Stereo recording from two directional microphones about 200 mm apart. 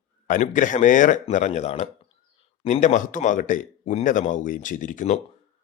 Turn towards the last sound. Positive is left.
turn(degrees=40)  # may be behind; listen again after turning